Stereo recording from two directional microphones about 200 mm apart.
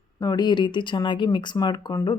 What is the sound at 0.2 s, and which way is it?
Speech, 20° left (ahead or behind).